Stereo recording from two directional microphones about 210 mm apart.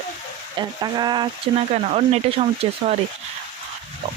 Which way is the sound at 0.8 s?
20° right (ahead or behind).